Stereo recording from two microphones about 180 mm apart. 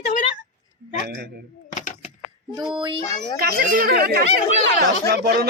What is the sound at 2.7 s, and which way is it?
Speech, 25° right (ahead or behind).